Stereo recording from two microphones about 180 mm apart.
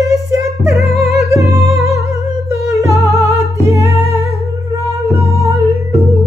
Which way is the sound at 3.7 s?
35° left (ahead or behind).